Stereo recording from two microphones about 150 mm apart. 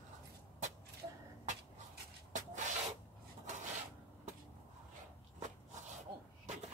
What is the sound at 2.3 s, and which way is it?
Rub, 55° right (ahead or behind).